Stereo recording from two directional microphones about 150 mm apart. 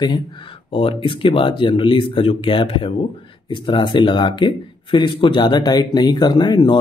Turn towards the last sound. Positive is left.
turn(degrees=30)  # may be behind; listen again after turning